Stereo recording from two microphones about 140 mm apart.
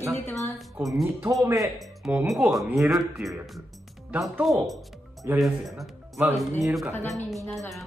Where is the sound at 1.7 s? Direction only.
10° right (ahead or behind).